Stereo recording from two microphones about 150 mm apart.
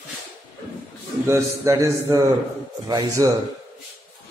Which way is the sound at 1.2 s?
20° right (ahead or behind).